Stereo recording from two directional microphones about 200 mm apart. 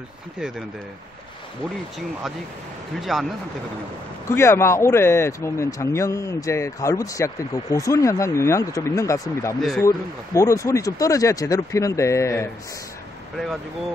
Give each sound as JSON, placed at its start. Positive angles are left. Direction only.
{"t": 3.0, "sound": "speech", "side_deg": 0}
{"t": 4.4, "sound": "speech", "side_deg": 15}
{"t": 9.6, "sound": "speech", "side_deg": 0}
{"t": 9.8, "sound": "speech", "side_deg": 15}